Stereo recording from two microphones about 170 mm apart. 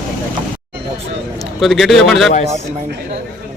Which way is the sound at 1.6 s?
Centre (ahead or behind).